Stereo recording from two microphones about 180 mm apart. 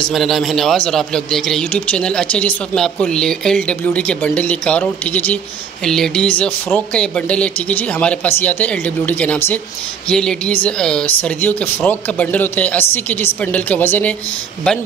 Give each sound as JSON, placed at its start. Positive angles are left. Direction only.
{"t": 0.0, "sound": "a man's voice", "side_deg": 0}